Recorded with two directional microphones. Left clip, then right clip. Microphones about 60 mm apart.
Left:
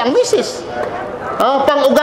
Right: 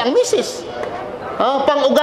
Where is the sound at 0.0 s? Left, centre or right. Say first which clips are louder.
Left 2 dB; centre.